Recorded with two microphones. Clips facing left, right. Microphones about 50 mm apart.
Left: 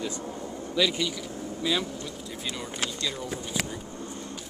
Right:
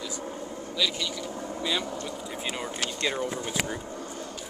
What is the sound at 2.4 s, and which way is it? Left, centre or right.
Speech, right.